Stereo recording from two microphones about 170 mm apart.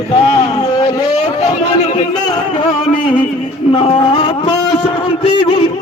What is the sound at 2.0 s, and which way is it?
Speech, 25° left (ahead or behind).